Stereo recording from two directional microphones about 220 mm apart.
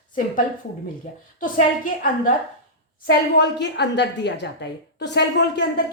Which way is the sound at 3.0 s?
50° left (ahead or behind).